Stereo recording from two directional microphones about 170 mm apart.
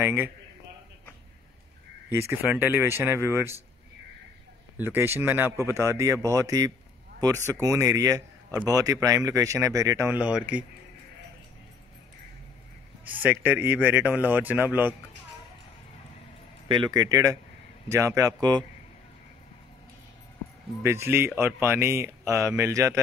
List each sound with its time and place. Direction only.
0.0 s a man's voice: 10° right (ahead or behind)
2.0 s a man's voice: 15° right (ahead or behind)
4.7 s a man's voice: 15° right (ahead or behind)
13.1 s a man's voice: 10° right (ahead or behind)
16.6 s speech: 25° right (ahead or behind)
20.8 s a man's voice: 15° right (ahead or behind)